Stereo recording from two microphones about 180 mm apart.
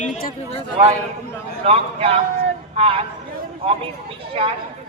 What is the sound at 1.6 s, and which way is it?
A man's voice, 35° right (ahead or behind).